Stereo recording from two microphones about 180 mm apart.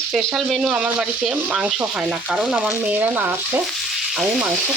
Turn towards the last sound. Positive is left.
turn(degrees=-10)  # may be behind; listen again after turning